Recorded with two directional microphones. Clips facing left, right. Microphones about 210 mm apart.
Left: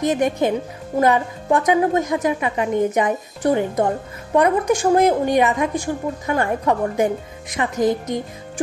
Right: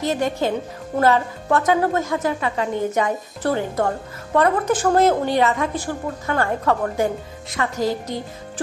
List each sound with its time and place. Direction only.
0.0 s a woman's voice: 15° left (ahead or behind)